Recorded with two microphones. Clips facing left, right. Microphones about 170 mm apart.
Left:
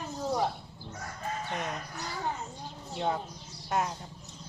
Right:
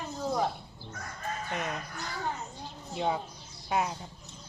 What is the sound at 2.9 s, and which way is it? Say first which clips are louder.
Speech: right 1 dB; centre (ahead or behind).